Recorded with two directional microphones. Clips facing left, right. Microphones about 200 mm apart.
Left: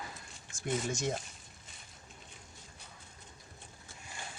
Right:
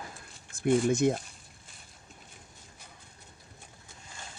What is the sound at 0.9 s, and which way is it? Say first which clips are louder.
Speech: right 9 dB; 55° right (ahead or behind).